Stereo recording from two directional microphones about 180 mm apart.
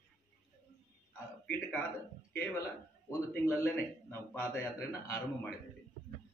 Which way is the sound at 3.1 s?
10° left (ahead or behind).